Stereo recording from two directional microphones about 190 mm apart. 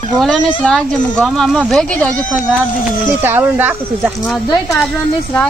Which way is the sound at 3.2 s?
10° right (ahead or behind).